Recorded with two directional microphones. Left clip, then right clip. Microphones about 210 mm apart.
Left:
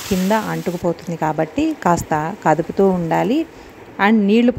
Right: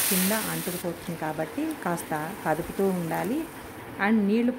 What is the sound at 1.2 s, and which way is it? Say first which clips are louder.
A woman's voice: left 12 dB; 40° left (ahead or behind).